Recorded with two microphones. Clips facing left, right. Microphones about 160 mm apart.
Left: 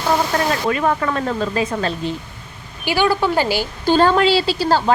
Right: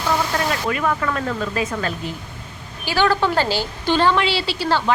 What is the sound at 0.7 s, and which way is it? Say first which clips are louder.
A woman's voice: left 3 dB; 35° left (ahead or behind).